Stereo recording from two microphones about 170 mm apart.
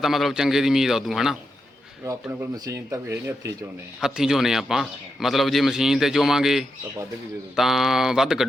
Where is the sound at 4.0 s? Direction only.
5° right (ahead or behind).